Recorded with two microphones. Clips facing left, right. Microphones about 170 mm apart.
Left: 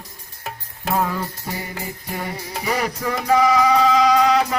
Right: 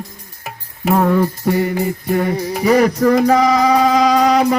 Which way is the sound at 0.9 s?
55° right (ahead or behind).